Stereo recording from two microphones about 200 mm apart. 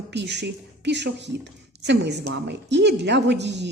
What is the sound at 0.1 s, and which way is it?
A woman's voice, 60° right (ahead or behind).